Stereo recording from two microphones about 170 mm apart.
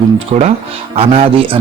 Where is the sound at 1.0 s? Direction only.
30° right (ahead or behind).